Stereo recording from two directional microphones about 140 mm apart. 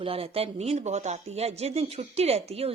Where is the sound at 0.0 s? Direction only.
45° right (ahead or behind).